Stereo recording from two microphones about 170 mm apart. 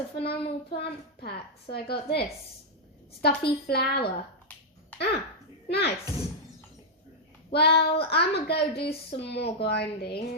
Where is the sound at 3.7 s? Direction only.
70° left (ahead or behind).